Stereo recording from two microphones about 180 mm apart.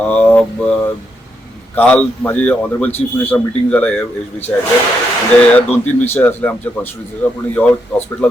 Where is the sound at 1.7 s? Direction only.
5° left (ahead or behind).